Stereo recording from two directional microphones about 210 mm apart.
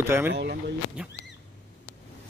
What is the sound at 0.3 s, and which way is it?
Speech, 55° right (ahead or behind).